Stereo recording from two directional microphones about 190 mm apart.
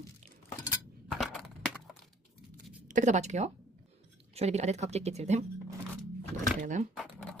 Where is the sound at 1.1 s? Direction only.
Centre (ahead or behind).